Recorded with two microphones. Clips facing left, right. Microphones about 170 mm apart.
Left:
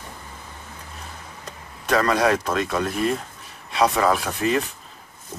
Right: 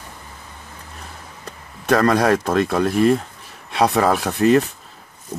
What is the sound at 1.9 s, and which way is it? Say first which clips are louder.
Speech: right 4 dB; 40° right (ahead or behind).